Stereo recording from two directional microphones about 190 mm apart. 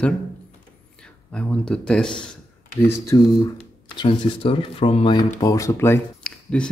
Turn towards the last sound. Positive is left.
turn(degrees=5)  # may be behind; listen again after turning